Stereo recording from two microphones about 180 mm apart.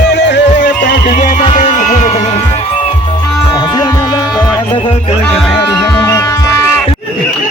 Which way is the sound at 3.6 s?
20° left (ahead or behind).